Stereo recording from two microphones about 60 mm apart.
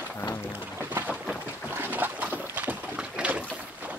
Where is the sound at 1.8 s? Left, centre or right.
Right.